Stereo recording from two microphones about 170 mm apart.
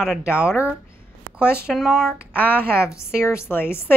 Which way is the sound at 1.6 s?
Centre (ahead or behind).